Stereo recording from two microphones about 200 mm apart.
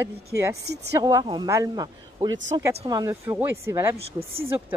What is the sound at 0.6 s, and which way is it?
Speech, 55° right (ahead or behind).